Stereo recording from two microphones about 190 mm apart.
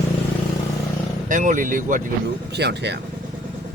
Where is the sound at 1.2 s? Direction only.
45° right (ahead or behind).